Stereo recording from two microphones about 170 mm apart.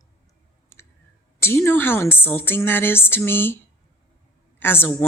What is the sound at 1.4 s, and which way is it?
A woman's voice, 15° left (ahead or behind).